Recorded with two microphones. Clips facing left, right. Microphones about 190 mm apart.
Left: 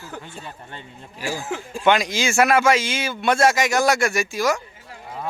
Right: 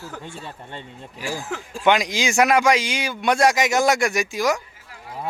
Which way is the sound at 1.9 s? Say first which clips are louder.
Even; 15° right (ahead or behind).